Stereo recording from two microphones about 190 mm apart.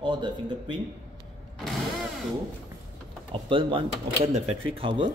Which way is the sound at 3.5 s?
25° right (ahead or behind).